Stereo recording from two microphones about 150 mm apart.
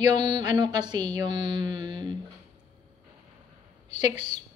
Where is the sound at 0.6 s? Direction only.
30° right (ahead or behind).